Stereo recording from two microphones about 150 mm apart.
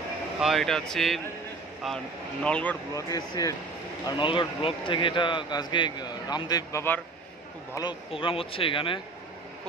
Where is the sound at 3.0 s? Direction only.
25° left (ahead or behind).